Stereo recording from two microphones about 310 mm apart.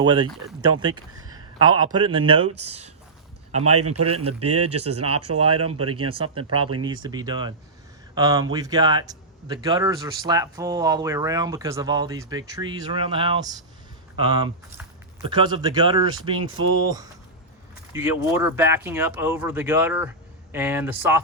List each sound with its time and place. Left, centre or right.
0.0 s speech: centre
1.5 s speech: right
2.0 s speech: centre
3.6 s speech: right
6.8 s speech: centre
17.9 s speech: centre